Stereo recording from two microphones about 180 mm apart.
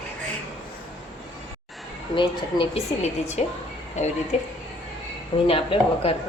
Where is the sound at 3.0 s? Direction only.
40° left (ahead or behind).